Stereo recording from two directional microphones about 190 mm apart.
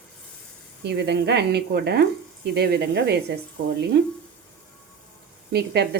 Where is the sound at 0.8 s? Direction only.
60° right (ahead or behind).